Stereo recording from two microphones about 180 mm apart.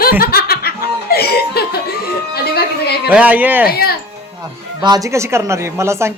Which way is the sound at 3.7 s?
60° left (ahead or behind).